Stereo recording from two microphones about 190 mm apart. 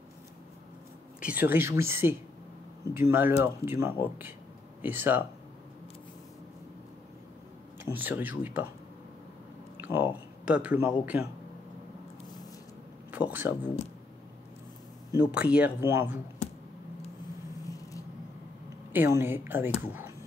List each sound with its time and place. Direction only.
1.2 s speech: 10° right (ahead or behind)
7.8 s speech: 10° right (ahead or behind)
9.8 s a sound: 10° right (ahead or behind)
10.4 s speech: 5° right (ahead or behind)
13.1 s speech: 10° right (ahead or behind)
15.3 s speech: 5° right (ahead or behind)
16.4 s computer keyboard: 35° left (ahead or behind)
17.6 s a sound: 20° left (ahead or behind)
18.9 s speech: 15° right (ahead or behind)